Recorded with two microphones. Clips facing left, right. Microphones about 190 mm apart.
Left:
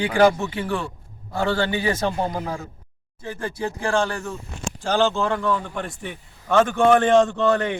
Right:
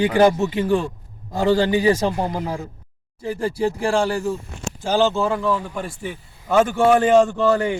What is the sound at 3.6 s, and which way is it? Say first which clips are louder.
Speech: right 6 dB; 30° right (ahead or behind).